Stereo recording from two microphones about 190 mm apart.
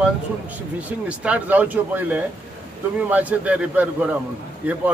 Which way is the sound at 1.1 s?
5° right (ahead or behind).